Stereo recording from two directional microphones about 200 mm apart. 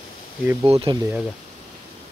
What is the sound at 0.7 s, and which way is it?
Speech, 25° right (ahead or behind).